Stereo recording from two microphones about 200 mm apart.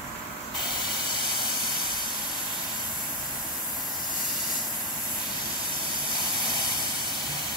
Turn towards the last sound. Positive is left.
turn(degrees=25)  # may be behind; listen again after turning